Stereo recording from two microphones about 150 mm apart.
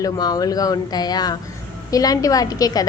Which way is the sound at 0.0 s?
25° left (ahead or behind).